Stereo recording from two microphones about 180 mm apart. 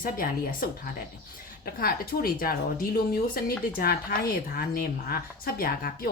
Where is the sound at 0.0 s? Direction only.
50° left (ahead or behind).